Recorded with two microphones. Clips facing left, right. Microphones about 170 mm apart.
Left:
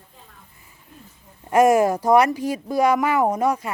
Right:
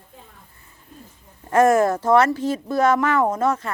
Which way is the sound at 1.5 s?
10° left (ahead or behind).